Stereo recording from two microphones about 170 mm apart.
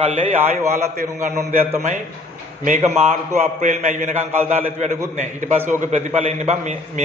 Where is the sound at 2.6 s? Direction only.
40° right (ahead or behind).